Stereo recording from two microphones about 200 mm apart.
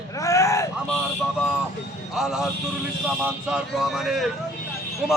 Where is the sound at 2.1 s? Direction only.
5° right (ahead or behind).